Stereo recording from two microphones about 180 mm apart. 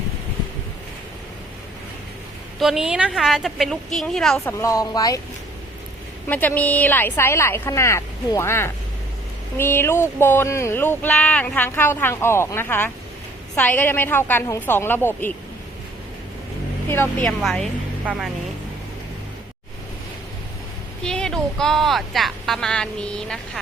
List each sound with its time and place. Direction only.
2.6 s speech: 5° right (ahead or behind)
4.5 s speech: 15° left (ahead or behind)
6.2 s speech: 10° left (ahead or behind)
16.9 s speech: 10° left (ahead or behind); by 18.3 s 5° right (ahead or behind)
21.0 s speech: 5° left (ahead or behind)